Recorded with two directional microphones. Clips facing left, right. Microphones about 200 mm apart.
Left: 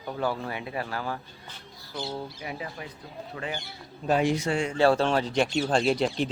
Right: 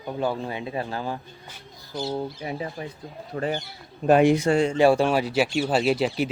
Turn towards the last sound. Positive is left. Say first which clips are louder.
# right 2 dB
turn(degrees=-5)  # may be behind; listen again after turning